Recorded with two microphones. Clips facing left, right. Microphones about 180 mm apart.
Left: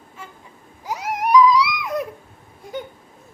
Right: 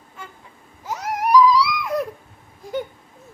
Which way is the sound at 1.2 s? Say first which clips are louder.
Even; centre (ahead or behind).